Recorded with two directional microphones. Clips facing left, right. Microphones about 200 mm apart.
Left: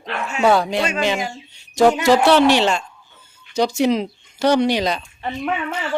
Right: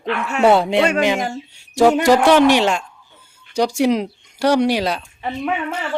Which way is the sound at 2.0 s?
10° right (ahead or behind).